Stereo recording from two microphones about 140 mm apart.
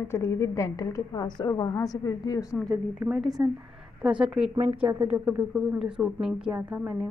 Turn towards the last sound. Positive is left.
turn(degrees=-15)  # may be behind; listen again after turning